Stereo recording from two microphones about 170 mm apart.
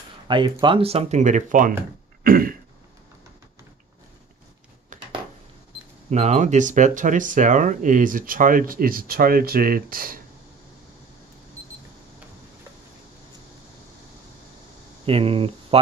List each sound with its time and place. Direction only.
0.3 s speech: 30° right (ahead or behind); by 1.7 s 50° right (ahead or behind)
2.2 s throat clearing: 55° right (ahead or behind)
6.0 s speech: 40° right (ahead or behind); by 10.2 s 55° right (ahead or behind)
15.0 s speech: 35° right (ahead or behind)